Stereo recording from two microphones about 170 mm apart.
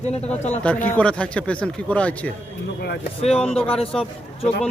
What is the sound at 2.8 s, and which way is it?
Speech, 75° left (ahead or behind).